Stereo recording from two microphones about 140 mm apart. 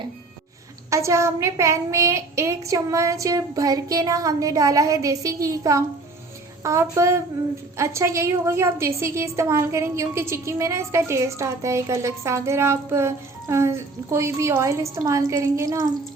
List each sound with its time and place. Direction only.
0.9 s a woman's voice: 20° right (ahead or behind)